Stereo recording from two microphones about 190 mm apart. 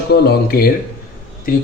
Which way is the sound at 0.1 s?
55° left (ahead or behind).